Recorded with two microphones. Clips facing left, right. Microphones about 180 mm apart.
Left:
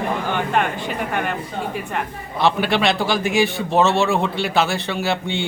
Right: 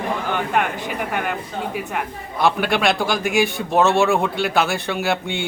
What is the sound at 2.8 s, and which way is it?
A man's voice, centre (ahead or behind).